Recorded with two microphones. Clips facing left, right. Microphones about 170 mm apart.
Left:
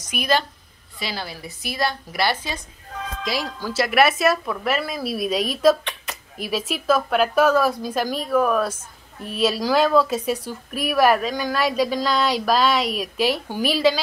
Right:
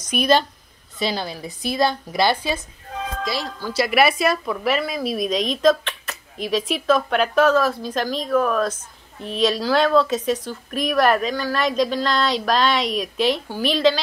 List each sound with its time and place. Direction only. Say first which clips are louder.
0.0 s a woman's voice: right 4 dB; 20° right (ahead or behind)
3.3 s a woman's voice: even; 10° left (ahead or behind)
3.8 s a woman's voice: even; centre (ahead or behind)